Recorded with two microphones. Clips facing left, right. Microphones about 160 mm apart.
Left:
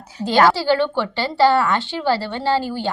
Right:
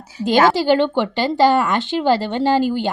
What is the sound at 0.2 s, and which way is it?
A woman's voice, 15° right (ahead or behind).